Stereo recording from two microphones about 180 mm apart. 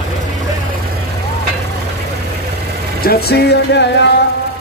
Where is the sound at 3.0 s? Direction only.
60° left (ahead or behind).